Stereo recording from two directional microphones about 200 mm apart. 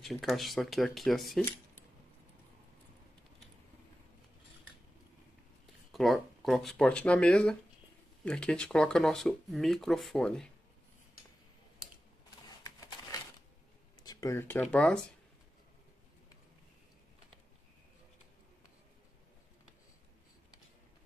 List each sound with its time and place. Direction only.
0.0 s speech: centre (ahead or behind)
5.9 s speech: centre (ahead or behind)
12.4 s a sound: 20° left (ahead or behind)
14.0 s speech: 15° left (ahead or behind)